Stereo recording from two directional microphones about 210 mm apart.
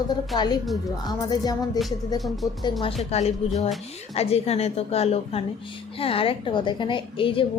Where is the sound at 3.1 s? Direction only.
30° left (ahead or behind).